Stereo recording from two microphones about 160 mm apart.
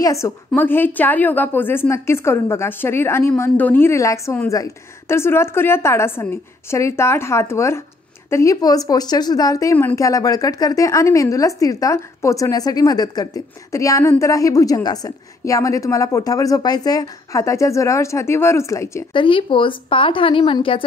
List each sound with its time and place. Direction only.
0.0 s a woman's voice: 20° left (ahead or behind)
19.1 s speech: 30° left (ahead or behind)